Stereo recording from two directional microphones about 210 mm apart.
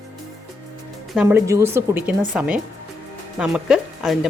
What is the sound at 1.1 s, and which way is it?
Speech, 5° right (ahead or behind).